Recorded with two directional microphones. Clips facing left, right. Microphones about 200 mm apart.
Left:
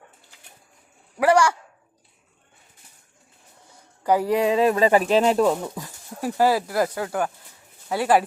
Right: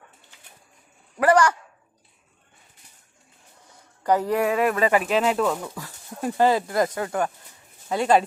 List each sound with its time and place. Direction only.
1.2 s speech: 10° left (ahead or behind)
4.0 s speech: 10° left (ahead or behind); by 5.5 s 35° left (ahead or behind)
5.6 s speech: 20° left (ahead or behind)
6.2 s speech: 5° left (ahead or behind)